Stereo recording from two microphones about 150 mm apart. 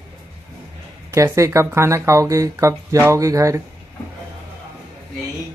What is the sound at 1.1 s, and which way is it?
Speech, 20° right (ahead or behind).